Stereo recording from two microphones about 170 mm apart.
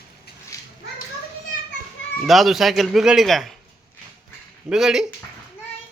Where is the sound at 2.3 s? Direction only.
Centre (ahead or behind).